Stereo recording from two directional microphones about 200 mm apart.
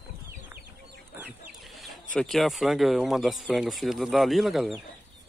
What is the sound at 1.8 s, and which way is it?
Speech, centre (ahead or behind).